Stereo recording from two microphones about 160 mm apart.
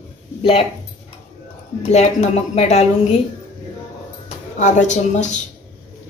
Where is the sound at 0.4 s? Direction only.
35° left (ahead or behind).